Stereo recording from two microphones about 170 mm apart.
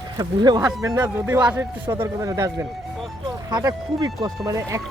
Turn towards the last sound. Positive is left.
turn(degrees=-20)  # may be behind; listen again after turning